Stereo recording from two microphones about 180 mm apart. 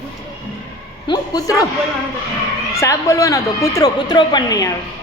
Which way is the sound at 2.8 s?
15° left (ahead or behind).